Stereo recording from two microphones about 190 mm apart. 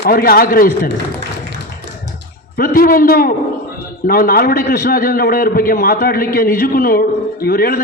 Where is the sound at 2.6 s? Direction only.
50° left (ahead or behind).